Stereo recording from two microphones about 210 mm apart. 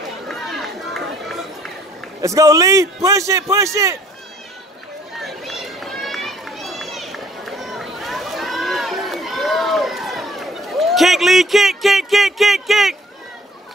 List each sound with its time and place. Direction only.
0.3 s run: centre (ahead or behind)
2.2 s a man's voice: 15° right (ahead or behind)
5.2 s run: centre (ahead or behind)